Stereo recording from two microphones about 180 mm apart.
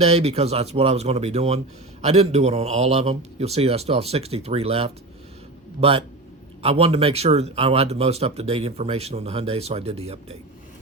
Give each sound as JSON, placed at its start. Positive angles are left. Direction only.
{"t": 0.0, "sound": "speech", "side_deg": -35}
{"t": 6.6, "sound": "speech", "side_deg": -35}